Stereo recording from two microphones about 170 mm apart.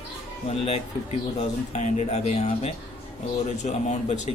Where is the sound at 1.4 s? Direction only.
40° left (ahead or behind).